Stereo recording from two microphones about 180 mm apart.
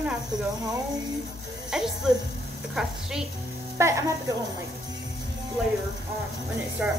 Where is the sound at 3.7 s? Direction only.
15° right (ahead or behind).